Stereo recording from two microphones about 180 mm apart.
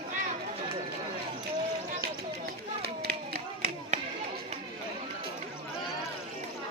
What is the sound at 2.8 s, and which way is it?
Run, 60° right (ahead or behind).